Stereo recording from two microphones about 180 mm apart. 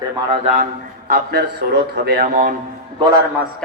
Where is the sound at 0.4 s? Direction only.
45° right (ahead or behind).